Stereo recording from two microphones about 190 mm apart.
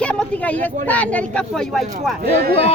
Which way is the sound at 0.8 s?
5° left (ahead or behind).